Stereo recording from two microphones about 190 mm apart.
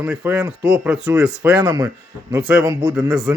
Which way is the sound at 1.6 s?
20° right (ahead or behind).